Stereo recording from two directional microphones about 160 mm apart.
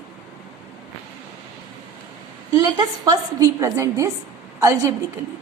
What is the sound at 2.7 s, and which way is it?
A woman's voice, 25° right (ahead or behind).